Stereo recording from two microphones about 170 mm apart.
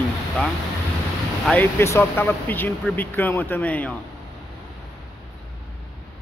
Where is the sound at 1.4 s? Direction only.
10° left (ahead or behind).